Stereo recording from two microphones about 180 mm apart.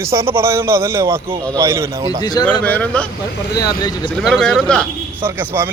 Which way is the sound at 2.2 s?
20° left (ahead or behind).